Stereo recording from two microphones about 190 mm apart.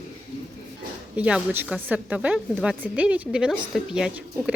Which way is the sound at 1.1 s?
5° right (ahead or behind).